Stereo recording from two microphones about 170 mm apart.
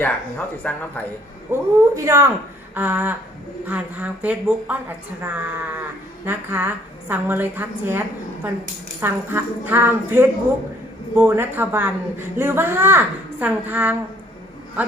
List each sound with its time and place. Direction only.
0.0 s speech: 10° left (ahead or behind)
1.5 s a woman's voice: 15° right (ahead or behind)